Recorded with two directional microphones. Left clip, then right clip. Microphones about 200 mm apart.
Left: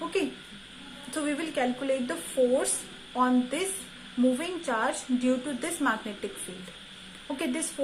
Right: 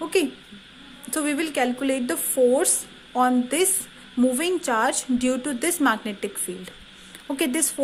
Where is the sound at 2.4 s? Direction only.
40° right (ahead or behind).